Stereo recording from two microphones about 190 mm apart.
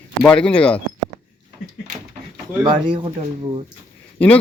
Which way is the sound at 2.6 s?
25° right (ahead or behind).